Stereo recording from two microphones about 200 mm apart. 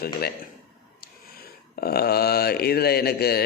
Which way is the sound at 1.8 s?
50° left (ahead or behind).